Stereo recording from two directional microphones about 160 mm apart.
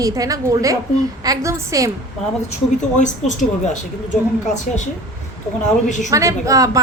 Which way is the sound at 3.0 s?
50° left (ahead or behind).